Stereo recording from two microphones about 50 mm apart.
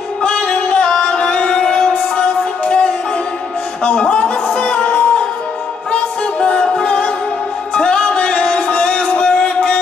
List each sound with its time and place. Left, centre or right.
0.2 s music: centre